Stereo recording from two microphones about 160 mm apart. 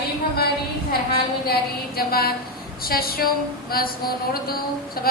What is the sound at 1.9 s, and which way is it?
Speech, 70° left (ahead or behind).